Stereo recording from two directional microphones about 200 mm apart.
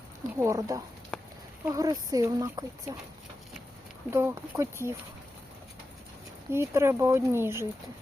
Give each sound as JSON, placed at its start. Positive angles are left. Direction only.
{"t": 0.3, "sound": "speech", "side_deg": -15}
{"t": 1.1, "sound": "a sound", "side_deg": 5}
{"t": 1.6, "sound": "speech", "side_deg": -15}
{"t": 4.1, "sound": "speech", "side_deg": -15}
{"t": 6.5, "sound": "speech", "side_deg": -15}